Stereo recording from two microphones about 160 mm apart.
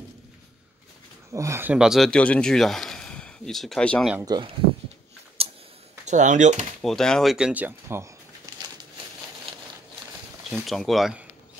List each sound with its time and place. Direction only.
1.3 s speech: 20° right (ahead or behind); by 4.1 s 5° left (ahead or behind)
4.3 s speech: 30° right (ahead or behind)
5.4 s a sound: 35° right (ahead or behind)
6.0 s speech: 50° right (ahead or behind)
6.8 s speech: 5° left (ahead or behind); by 8.1 s 15° right (ahead or behind)
10.5 s speech: centre (ahead or behind)